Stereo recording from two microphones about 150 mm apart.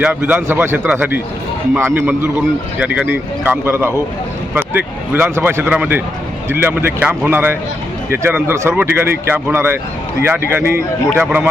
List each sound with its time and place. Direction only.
0.0 s speech: 10° right (ahead or behind)